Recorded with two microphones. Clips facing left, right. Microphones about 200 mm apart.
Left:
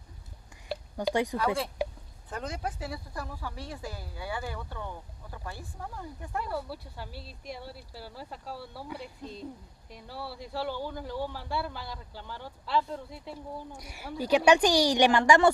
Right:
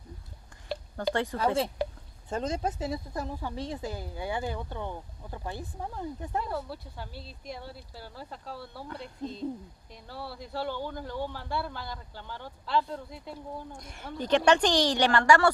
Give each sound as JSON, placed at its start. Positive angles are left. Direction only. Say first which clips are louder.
{"t": 0.7, "sound": "whispering", "louder": "even", "side_deg": 10}
{"t": 1.4, "sound": "speech", "louder": "right 2 dB", "side_deg": -25}
{"t": 6.7, "sound": "a man's voice", "louder": "even", "side_deg": 5}